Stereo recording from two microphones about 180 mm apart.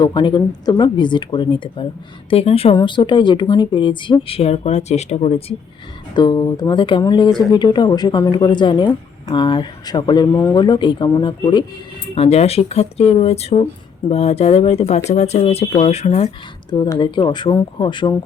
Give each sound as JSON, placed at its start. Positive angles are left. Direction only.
{"t": 0.0, "sound": "speech", "side_deg": 25}
{"t": 6.1, "sound": "speech", "side_deg": 25}
{"t": 12.1, "sound": "speech", "side_deg": 35}
{"t": 16.6, "sound": "speech", "side_deg": 25}